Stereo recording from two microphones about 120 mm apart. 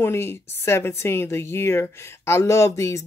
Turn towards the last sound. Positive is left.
turn(degrees=25)  # may be behind; listen again after turning